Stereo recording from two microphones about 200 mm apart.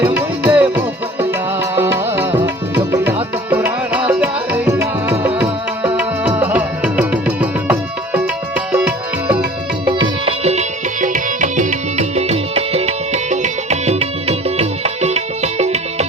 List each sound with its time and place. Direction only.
0.1 s music: 10° right (ahead or behind)
1.7 s music: 10° right (ahead or behind)
9.8 s music: 25° right (ahead or behind)